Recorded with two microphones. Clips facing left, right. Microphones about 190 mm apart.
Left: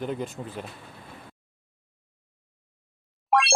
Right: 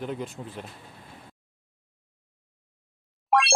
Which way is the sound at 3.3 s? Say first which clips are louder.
Even; centre (ahead or behind).